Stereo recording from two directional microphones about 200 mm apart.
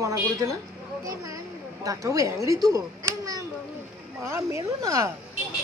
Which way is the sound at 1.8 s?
15° right (ahead or behind).